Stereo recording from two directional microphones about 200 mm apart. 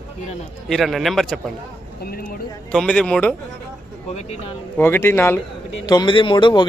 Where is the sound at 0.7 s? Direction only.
Centre (ahead or behind).